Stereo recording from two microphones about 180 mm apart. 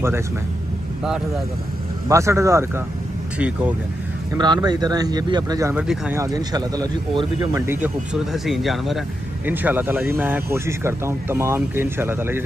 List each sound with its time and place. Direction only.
2.0 s speech: 15° right (ahead or behind)
4.3 s speech: 20° right (ahead or behind)
6.2 s speech: 20° right (ahead or behind)